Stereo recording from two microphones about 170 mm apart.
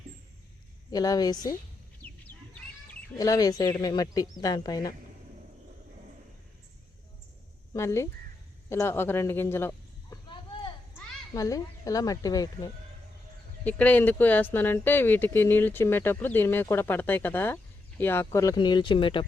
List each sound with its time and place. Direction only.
0.9 s speech: 20° left (ahead or behind)
2.0 s bird: 10° left (ahead or behind)
3.2 s speech: 20° left (ahead or behind)
7.7 s a man's voice: 15° left (ahead or behind)
10.2 s a sound: 30° left (ahead or behind)
11.3 s speech: 20° left (ahead or behind)
13.7 s speech: 10° left (ahead or behind); by 19.2 s 30° left (ahead or behind)